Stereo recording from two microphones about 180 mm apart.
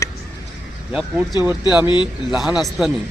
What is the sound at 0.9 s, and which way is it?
Speech, 10° right (ahead or behind).